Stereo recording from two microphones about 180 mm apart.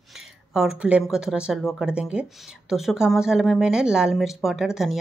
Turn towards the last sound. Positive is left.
turn(degrees=0)  # may be behind; listen again after turning